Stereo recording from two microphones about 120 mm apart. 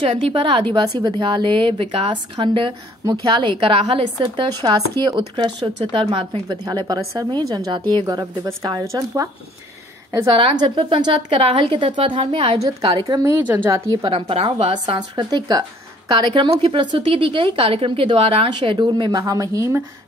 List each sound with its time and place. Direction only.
0.3 s a woman's voice: 45° right (ahead or behind)
5.0 s a woman's voice: 40° right (ahead or behind)
6.5 s a woman's voice: 35° right (ahead or behind)
10.2 s a woman's voice: 45° right (ahead or behind)
12.8 s a woman's voice: 35° right (ahead or behind)
14.3 s a woman's voice: 55° right (ahead or behind)
14.7 s a woman's voice: 40° right (ahead or behind)